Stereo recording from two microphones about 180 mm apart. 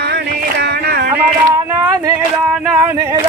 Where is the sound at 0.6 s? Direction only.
60° right (ahead or behind).